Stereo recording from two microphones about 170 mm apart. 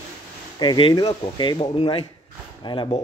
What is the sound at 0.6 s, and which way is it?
Speech, 25° left (ahead or behind).